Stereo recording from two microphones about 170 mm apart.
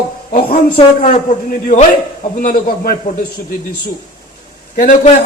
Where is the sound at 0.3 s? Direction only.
60° left (ahead or behind).